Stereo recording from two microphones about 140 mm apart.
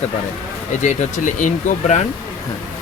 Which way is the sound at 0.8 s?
60° left (ahead or behind).